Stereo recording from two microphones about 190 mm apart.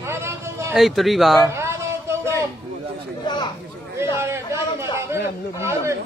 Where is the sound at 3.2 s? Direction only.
25° left (ahead or behind).